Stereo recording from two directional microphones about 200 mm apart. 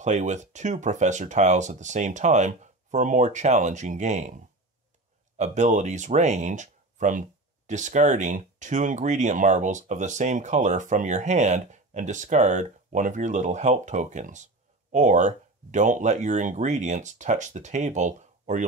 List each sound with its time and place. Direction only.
0.0 s speech: 35° right (ahead or behind)
5.4 s speech: 35° right (ahead or behind)